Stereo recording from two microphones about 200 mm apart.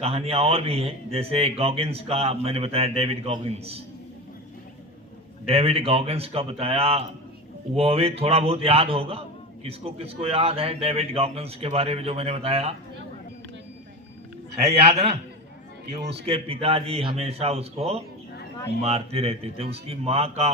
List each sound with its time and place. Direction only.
0.0 s speech: 30° right (ahead or behind)
5.5 s speech: 30° right (ahead or behind)
14.5 s a man's voice: 30° right (ahead or behind)
16.2 s speech: 30° right (ahead or behind)